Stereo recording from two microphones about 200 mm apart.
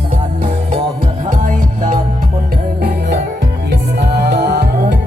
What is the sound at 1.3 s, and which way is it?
Music, 40° right (ahead or behind).